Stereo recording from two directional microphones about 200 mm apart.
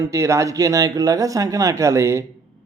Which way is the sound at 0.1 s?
15° right (ahead or behind).